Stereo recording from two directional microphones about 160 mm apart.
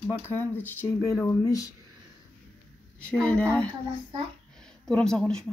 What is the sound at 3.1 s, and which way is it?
Speech, 5° left (ahead or behind).